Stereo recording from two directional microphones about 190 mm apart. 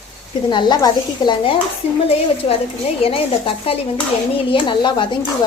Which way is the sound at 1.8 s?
35° left (ahead or behind).